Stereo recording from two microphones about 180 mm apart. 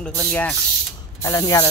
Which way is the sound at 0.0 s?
5° left (ahead or behind).